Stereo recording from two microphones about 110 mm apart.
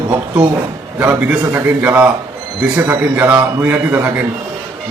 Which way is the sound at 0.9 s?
15° right (ahead or behind).